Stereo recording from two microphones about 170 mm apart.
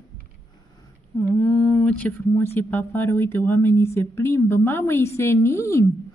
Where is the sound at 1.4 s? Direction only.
10° left (ahead or behind).